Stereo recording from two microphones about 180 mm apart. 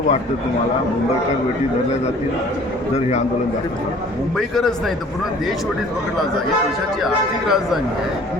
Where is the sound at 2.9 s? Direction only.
40° left (ahead or behind).